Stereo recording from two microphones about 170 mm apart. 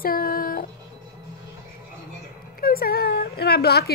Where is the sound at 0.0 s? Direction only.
60° left (ahead or behind).